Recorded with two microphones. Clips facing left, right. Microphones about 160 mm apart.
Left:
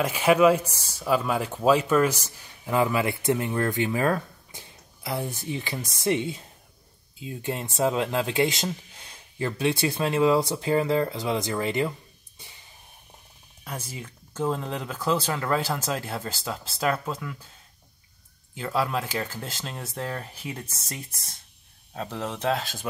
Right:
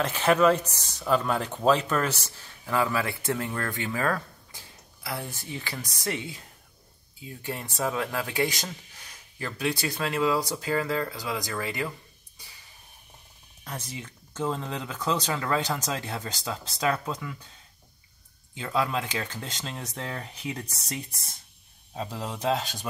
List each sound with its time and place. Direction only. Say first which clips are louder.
0.0 s speech: left 3 dB; 10° left (ahead or behind)
12.4 s music: left 3 dB; 25° left (ahead or behind)
13.7 s speech: left 1 dB; 10° left (ahead or behind)
18.6 s speech: left 1 dB; 5° left (ahead or behind)